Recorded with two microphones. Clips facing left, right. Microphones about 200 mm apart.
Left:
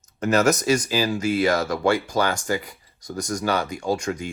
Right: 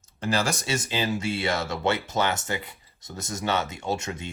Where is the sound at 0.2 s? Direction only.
30° right (ahead or behind).